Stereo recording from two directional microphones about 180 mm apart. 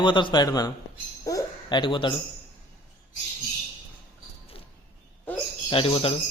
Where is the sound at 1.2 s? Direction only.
20° left (ahead or behind).